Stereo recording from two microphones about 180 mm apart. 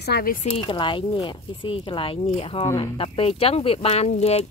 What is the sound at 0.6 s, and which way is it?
Speech, 30° left (ahead or behind).